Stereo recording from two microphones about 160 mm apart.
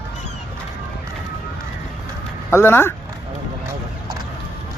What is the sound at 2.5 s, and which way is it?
Speech, 15° left (ahead or behind).